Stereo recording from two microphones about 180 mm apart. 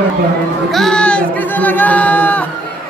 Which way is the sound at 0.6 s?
Centre (ahead or behind).